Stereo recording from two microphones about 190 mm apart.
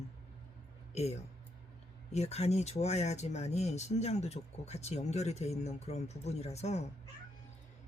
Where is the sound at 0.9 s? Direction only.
35° left (ahead or behind).